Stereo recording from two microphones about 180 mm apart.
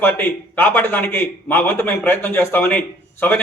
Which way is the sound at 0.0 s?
10° left (ahead or behind).